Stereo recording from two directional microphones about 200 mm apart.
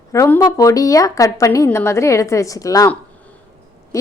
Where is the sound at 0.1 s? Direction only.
15° left (ahead or behind).